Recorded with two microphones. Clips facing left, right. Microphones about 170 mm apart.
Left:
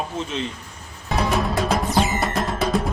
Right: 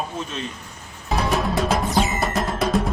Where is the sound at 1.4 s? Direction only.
Centre (ahead or behind).